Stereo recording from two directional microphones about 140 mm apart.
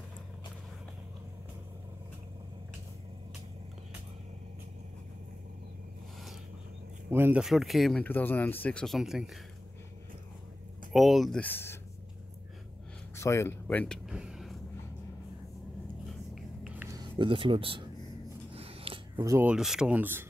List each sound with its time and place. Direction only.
7.1 s speech: 15° right (ahead or behind)
7.4 s speech: centre (ahead or behind)
8.0 s speech: 15° left (ahead or behind); by 9.4 s 5° right (ahead or behind)
10.9 s speech: centre (ahead or behind)
11.4 s speech: 15° left (ahead or behind)
13.1 s speech: 20° left (ahead or behind)
14.0 s a sound: 5° right (ahead or behind)
16.6 s a sound: 10° right (ahead or behind)
16.9 s speech: 35° right (ahead or behind)
18.5 s a sound: 45° right (ahead or behind)
19.4 s speech: 5° right (ahead or behind)